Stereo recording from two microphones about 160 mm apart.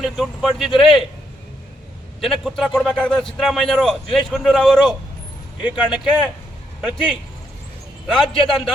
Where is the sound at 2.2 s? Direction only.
Centre (ahead or behind).